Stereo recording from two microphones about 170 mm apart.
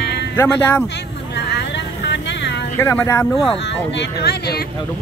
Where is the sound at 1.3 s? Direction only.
80° left.